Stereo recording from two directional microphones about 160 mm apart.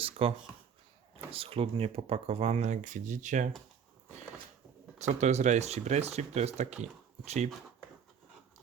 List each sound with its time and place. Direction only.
0.0 s speech: 35° right (ahead or behind)
4.9 s speech: 45° right (ahead or behind)